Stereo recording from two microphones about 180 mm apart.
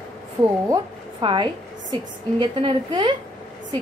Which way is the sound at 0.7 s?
25° right (ahead or behind).